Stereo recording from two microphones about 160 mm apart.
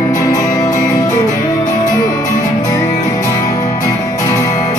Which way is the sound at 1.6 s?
55° left (ahead or behind).